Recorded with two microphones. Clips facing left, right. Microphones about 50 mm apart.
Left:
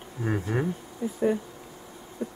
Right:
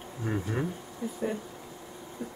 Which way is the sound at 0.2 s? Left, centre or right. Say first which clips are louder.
Left 4 dB; centre.